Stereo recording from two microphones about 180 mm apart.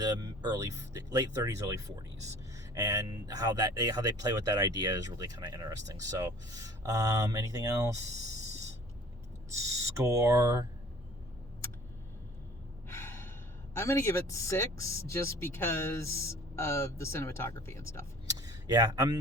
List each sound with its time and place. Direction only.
0.0 s speech: 20° right (ahead or behind)
9.5 s speech: 15° right (ahead or behind)
12.9 s gasp: 15° left (ahead or behind)
13.7 s speech: 15° left (ahead or behind)
18.3 s a sound: 20° right (ahead or behind)